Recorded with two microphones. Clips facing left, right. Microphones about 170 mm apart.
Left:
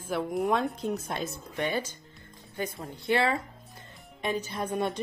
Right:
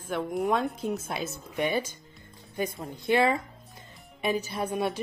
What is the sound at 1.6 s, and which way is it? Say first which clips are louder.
A woman's voice: right 2 dB; 10° right (ahead or behind).